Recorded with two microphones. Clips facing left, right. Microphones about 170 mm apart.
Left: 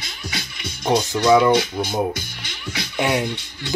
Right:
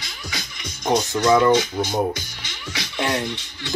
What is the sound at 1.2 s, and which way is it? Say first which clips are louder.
Speech: left 1 dB; 10° left (ahead or behind).